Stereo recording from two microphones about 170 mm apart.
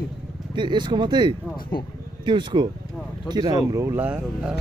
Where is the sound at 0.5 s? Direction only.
25° right (ahead or behind); by 4.5 s 5° right (ahead or behind).